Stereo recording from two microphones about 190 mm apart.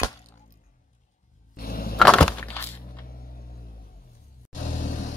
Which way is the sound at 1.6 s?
50° left (ahead or behind).